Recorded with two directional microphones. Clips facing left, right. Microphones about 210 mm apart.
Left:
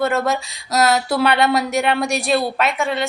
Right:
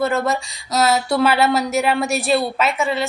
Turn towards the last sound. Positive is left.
turn(degrees=0)  # may be behind; listen again after turning